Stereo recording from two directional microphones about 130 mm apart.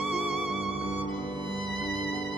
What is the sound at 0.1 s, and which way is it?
Music, 5° right (ahead or behind).